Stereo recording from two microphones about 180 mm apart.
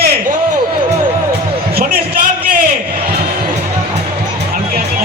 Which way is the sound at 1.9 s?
50° right (ahead or behind).